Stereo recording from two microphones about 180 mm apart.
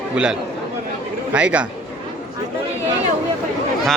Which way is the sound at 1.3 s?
5° right (ahead or behind).